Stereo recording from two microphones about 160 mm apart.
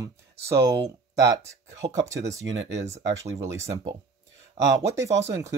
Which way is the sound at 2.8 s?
45° right (ahead or behind).